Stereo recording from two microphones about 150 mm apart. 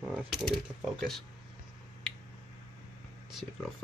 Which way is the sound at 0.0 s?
5° right (ahead or behind).